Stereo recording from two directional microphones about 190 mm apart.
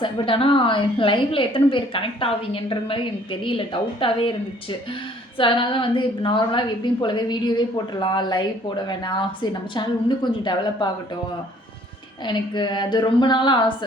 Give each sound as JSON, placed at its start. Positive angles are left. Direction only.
{"t": 0.0, "sound": "a woman's voice", "side_deg": 25}
{"t": 5.4, "sound": "a woman's voice", "side_deg": 25}
{"t": 12.2, "sound": "a woman's voice", "side_deg": 25}